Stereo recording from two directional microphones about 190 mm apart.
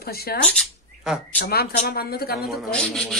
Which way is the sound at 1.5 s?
55° left (ahead or behind).